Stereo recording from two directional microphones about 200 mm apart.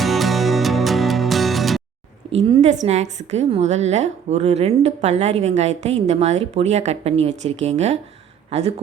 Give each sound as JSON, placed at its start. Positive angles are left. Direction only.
{"t": 0.0, "sound": "music", "side_deg": 0}
{"t": 2.3, "sound": "a woman's voice", "side_deg": -35}